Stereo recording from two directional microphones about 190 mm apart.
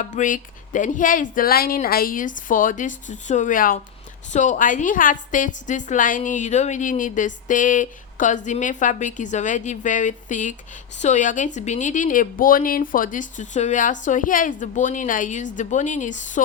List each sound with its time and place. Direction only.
0.0 s a woman's voice: 40° left (ahead or behind)